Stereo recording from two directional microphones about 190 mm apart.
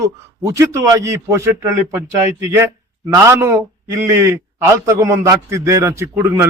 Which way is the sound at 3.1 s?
15° right (ahead or behind).